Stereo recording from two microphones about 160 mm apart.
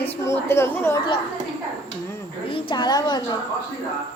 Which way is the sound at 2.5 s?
30° left (ahead or behind).